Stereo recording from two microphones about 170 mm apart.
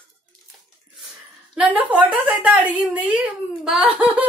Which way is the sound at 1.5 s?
10° right (ahead or behind).